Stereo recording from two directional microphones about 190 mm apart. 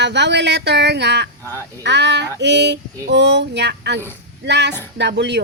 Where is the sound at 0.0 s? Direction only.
65° right (ahead or behind).